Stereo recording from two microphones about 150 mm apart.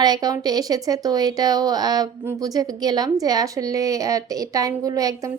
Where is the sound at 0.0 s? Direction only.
25° right (ahead or behind).